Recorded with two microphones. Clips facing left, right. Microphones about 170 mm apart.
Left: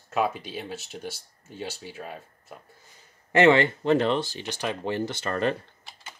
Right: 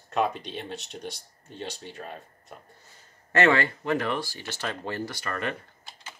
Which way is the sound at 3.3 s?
20° left (ahead or behind).